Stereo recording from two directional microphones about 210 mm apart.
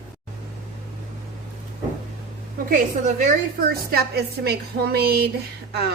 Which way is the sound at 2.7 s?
35° right (ahead or behind).